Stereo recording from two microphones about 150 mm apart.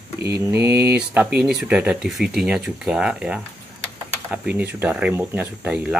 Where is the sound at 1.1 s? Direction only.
5° right (ahead or behind).